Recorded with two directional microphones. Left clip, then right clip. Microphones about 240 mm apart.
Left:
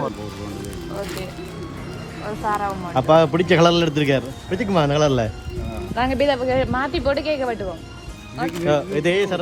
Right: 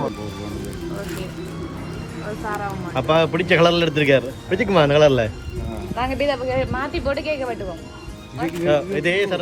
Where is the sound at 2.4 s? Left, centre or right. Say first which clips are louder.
Left 5 dB; left.